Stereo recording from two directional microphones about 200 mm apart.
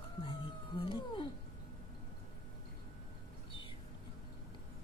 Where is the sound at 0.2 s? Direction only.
25° left (ahead or behind).